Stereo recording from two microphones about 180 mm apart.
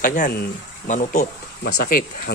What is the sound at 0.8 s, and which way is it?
Speech, 40° left (ahead or behind).